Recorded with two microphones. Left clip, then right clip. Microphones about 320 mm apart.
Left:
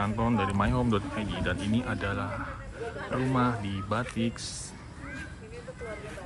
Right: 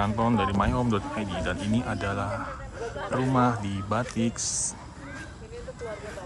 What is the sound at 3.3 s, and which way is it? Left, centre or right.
Speech, centre.